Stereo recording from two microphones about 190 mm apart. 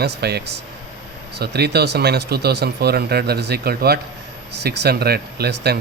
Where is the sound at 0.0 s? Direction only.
60° right (ahead or behind).